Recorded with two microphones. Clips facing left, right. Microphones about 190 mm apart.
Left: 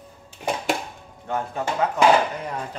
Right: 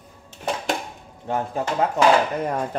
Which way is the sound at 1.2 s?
30° right (ahead or behind).